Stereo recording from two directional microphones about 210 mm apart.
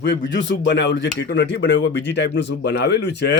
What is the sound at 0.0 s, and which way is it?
Speech, 55° left (ahead or behind).